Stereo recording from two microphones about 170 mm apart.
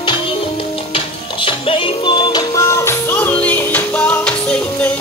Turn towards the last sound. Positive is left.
turn(degrees=5)  # may be behind; listen again after turning